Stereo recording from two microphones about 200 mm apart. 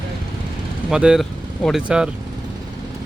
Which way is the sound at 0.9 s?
5° right (ahead or behind).